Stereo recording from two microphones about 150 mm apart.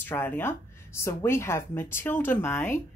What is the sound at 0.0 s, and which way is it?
A woman's voice, 15° left (ahead or behind).